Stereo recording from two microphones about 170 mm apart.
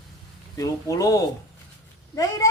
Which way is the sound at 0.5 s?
20° left (ahead or behind).